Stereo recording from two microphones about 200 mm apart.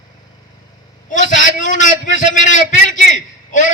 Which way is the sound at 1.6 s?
40° left (ahead or behind).